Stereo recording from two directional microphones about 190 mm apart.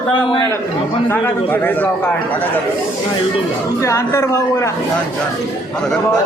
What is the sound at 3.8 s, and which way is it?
Speech, 15° left (ahead or behind).